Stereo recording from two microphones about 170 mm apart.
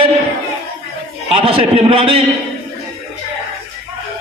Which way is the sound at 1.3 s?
30° right (ahead or behind).